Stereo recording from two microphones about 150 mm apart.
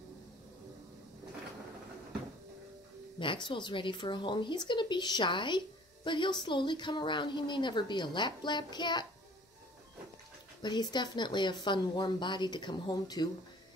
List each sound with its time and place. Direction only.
3.4 s a woman's voice: 30° left (ahead or behind)
10.6 s speech: 30° left (ahead or behind)